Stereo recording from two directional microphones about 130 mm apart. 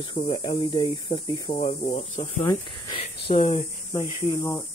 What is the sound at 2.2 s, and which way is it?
Speech, 25° left (ahead or behind).